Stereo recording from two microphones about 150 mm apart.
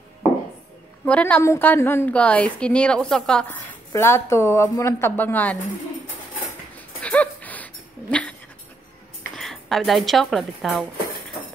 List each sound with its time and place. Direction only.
1.0 s a woman's voice: 10° left (ahead or behind)
3.9 s a woman's voice: 15° left (ahead or behind)
7.0 s dog: 10° left (ahead or behind)
9.4 s speech: centre (ahead or behind)